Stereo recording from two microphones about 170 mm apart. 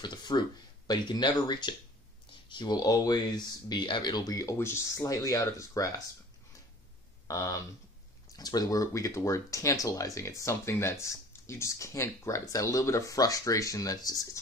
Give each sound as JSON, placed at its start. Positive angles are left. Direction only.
{"t": 0.0, "sound": "speech", "side_deg": 25}
{"t": 7.2, "sound": "speech", "side_deg": 20}